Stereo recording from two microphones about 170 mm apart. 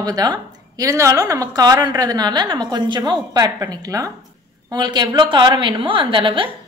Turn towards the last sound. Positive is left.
turn(degrees=-30)  # may be behind; listen again after turning